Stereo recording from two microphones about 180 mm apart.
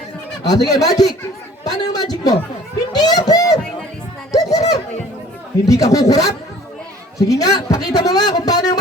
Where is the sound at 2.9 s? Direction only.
20° left (ahead or behind).